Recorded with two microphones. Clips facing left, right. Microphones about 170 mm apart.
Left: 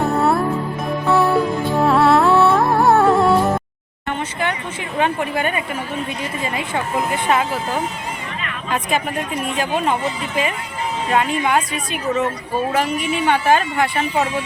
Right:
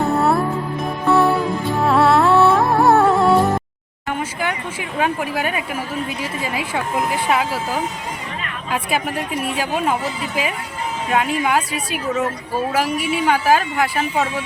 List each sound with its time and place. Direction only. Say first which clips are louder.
0.0 s music: even; centre (ahead or behind)
4.2 s speech: left 1 dB; 5° right (ahead or behind)